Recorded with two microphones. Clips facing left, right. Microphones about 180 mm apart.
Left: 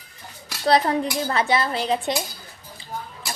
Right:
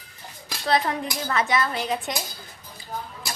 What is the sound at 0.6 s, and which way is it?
Cutlery, 35° left (ahead or behind).